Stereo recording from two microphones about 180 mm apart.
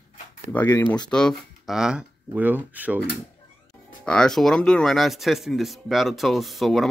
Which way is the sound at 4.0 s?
5° left (ahead or behind).